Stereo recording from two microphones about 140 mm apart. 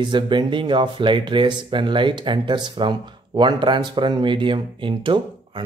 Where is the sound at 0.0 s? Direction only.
35° right (ahead or behind).